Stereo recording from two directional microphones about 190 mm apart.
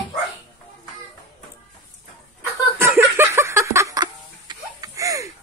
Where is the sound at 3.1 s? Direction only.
15° right (ahead or behind).